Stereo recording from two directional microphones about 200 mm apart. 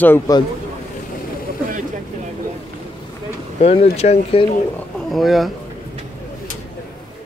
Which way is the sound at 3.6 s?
30° left (ahead or behind).